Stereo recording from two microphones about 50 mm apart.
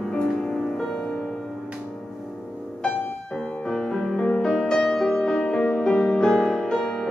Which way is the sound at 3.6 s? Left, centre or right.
Centre.